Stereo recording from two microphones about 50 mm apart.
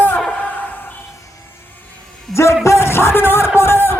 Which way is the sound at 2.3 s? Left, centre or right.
Left.